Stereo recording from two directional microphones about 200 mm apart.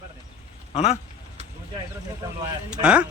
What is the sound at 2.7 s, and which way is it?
Speech, 5° right (ahead or behind).